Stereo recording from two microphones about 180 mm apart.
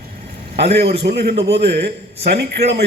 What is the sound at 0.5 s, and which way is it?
A man's voice, 65° right (ahead or behind).